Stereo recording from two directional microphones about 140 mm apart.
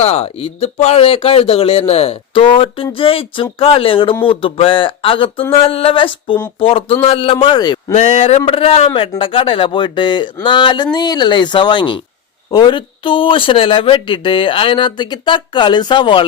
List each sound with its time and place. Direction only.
0.0 s speech: 45° left (ahead or behind); by 7.9 s 30° left (ahead or behind)
7.9 s speech: 45° left (ahead or behind)